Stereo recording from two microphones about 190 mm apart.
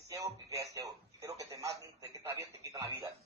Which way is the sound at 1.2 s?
15° right (ahead or behind).